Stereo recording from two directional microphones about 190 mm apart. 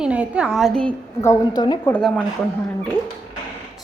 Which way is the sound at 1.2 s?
20° left (ahead or behind).